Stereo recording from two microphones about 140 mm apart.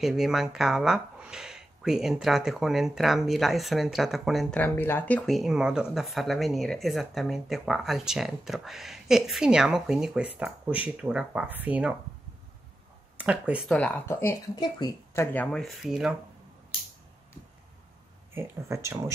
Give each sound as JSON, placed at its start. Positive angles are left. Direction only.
{"t": 0.0, "sound": "speech", "side_deg": -5}
{"t": 4.6, "sound": "speech", "side_deg": 15}
{"t": 13.2, "sound": "speech", "side_deg": -10}
{"t": 13.7, "sound": "speech", "side_deg": 5}
{"t": 14.5, "sound": "speech", "side_deg": 30}
{"t": 15.3, "sound": "speech", "side_deg": 5}
{"t": 18.3, "sound": "speech", "side_deg": -20}